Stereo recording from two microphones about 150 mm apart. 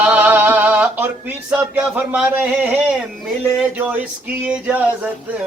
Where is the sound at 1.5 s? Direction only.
5° right (ahead or behind).